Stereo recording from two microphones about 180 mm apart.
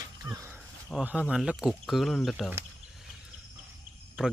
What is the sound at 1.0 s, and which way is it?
Speech, 5° right (ahead or behind).